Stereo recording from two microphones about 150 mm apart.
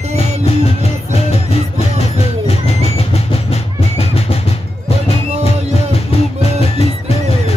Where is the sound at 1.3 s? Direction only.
40° left (ahead or behind).